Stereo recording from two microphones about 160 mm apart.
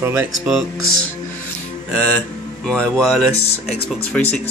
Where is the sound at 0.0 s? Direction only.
15° right (ahead or behind).